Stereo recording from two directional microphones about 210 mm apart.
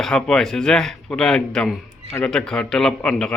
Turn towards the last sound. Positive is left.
turn(degrees=5)  # may be behind; listen again after turning